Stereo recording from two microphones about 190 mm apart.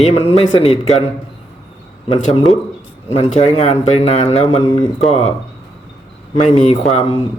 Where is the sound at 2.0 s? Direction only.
30° left (ahead or behind).